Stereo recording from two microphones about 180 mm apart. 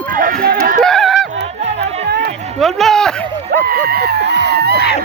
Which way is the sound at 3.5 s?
55° right (ahead or behind).